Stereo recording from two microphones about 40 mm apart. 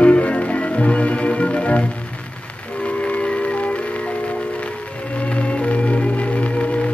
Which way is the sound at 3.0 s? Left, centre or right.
Left.